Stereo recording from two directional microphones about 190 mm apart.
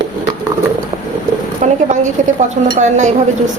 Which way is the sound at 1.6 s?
40° right (ahead or behind).